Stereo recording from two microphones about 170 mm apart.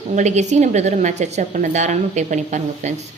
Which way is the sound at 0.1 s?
45° right (ahead or behind).